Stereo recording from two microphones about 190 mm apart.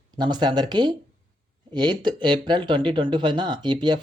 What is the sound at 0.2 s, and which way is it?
Speech, 20° right (ahead or behind).